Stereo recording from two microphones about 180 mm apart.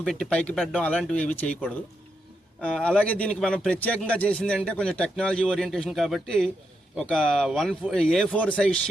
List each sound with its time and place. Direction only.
0.0 s a man's voice: 5° left (ahead or behind)